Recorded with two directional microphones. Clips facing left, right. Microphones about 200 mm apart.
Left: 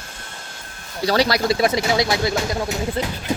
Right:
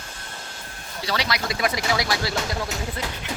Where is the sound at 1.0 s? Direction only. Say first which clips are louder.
Left 9 dB; 40° left (ahead or behind).